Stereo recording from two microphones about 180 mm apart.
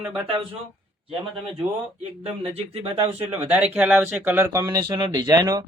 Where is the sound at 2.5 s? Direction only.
35° right (ahead or behind).